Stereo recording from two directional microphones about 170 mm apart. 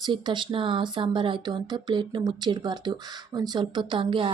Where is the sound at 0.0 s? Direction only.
25° right (ahead or behind).